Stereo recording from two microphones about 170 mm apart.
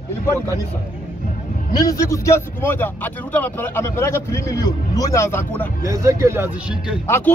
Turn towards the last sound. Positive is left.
turn(degrees=15)  # may be behind; listen again after turning